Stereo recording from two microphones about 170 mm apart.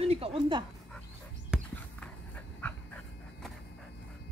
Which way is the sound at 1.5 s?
5° right (ahead or behind).